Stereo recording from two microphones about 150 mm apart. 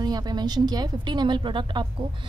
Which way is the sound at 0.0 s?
25° right (ahead or behind).